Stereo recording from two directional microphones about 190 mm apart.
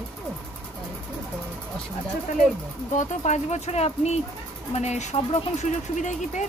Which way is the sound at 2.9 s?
40° left (ahead or behind).